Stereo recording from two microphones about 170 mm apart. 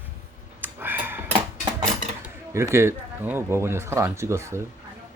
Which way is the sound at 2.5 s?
15° right (ahead or behind).